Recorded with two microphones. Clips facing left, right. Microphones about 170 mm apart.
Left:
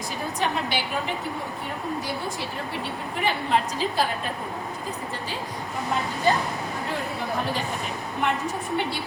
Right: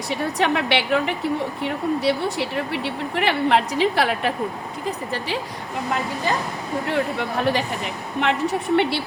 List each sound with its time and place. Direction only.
0.1 s speech: 70° right (ahead or behind)
6.9 s speech: 70° right (ahead or behind)